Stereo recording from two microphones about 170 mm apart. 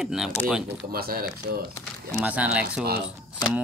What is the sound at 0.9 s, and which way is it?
Speech, 60° right (ahead or behind).